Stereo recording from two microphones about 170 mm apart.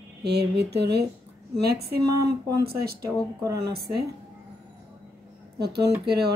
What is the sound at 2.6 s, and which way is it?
Speech, 65° right (ahead or behind).